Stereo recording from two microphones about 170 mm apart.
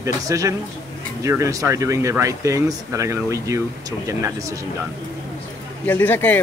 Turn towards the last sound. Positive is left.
turn(degrees=10)  # may be behind; listen again after turning